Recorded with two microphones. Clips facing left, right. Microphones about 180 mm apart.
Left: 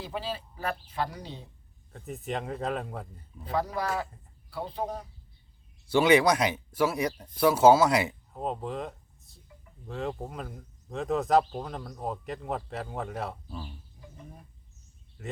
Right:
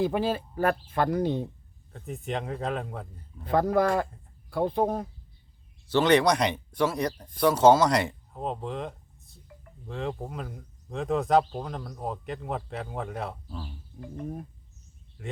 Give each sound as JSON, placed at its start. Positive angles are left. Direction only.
{"t": 0.0, "sound": "speech", "side_deg": -50}
{"t": 1.9, "sound": "speech", "side_deg": 0}
{"t": 3.5, "sound": "speech", "side_deg": -55}
{"t": 5.9, "sound": "speech", "side_deg": 10}
{"t": 14.0, "sound": "speech", "side_deg": -60}
{"t": 15.2, "sound": "speech", "side_deg": 0}